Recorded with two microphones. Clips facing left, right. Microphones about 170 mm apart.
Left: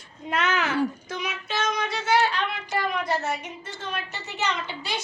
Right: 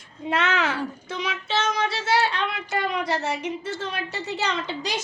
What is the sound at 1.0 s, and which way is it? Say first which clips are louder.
Speech: right 2 dB; 30° right (ahead or behind).